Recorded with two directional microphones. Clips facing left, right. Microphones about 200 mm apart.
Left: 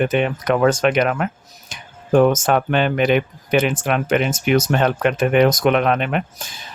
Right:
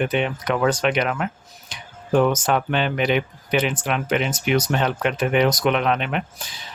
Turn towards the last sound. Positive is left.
turn(degrees=50)  # may be behind; listen again after turning